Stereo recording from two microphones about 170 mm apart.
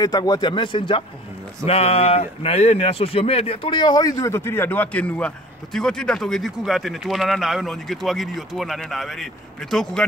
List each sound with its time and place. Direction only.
0.0 s speech: 25° left (ahead or behind); by 10.0 s 5° left (ahead or behind)